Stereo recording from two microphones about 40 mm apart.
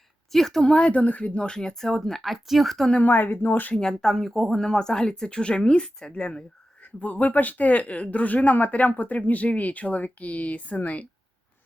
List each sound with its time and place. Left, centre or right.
0.3 s speech: centre
0.6 s speech: left
0.9 s speech: left
1.4 s speech: centre
3.0 s speech: left
3.8 s speech: centre
4.5 s speech: centre
6.8 s speech: left